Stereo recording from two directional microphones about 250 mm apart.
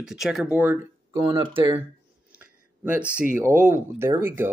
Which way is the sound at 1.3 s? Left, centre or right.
Centre.